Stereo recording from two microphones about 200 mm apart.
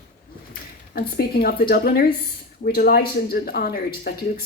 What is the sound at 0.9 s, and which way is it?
A woman's voice, 50° left (ahead or behind).